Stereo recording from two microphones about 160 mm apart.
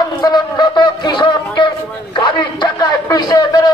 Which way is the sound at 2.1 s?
30° left (ahead or behind).